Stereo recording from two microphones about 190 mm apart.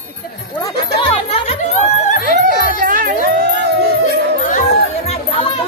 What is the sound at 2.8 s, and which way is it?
Music, 50° right (ahead or behind).